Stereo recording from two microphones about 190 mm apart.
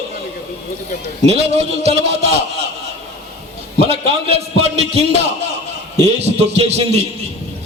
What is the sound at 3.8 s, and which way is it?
A man's voice, 30° right (ahead or behind).